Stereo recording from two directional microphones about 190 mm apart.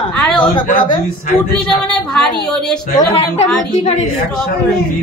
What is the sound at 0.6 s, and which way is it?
Speech, 45° left (ahead or behind).